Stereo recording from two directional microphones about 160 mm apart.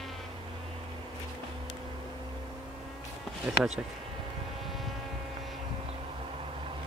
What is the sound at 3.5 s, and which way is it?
Speech, 5° right (ahead or behind).